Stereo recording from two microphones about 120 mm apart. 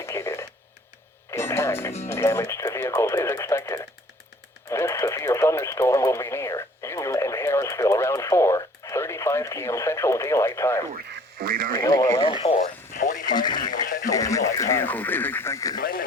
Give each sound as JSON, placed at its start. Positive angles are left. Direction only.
{"t": 0.0, "sound": "radio", "side_deg": 25}
{"t": 2.0, "sound": "speech", "side_deg": 20}
{"t": 13.0, "sound": "speech", "side_deg": 90}
{"t": 13.2, "sound": "speech", "side_deg": 35}